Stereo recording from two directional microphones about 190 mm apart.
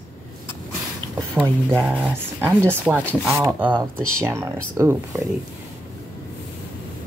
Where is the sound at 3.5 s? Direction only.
10° right (ahead or behind).